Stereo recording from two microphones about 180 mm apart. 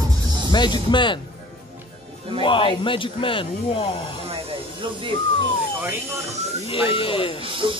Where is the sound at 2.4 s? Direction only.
30° left (ahead or behind).